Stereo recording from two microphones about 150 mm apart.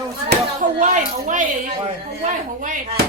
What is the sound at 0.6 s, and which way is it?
A woman's voice, 55° right (ahead or behind).